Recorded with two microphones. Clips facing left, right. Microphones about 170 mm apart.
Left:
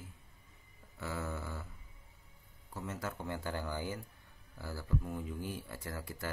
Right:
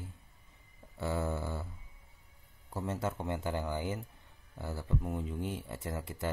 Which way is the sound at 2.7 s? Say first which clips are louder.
Right 6 dB; 35° right (ahead or behind).